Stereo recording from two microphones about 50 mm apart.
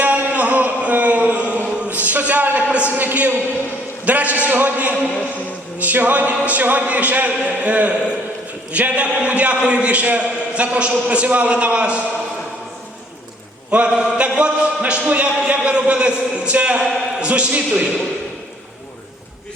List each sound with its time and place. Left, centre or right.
0.0 s a sound: right
5.8 s a capella: right
6.3 s a man's voice: right
13.7 s a man's voice: right